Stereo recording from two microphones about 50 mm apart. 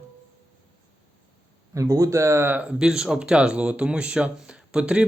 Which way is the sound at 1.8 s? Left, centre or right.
Right.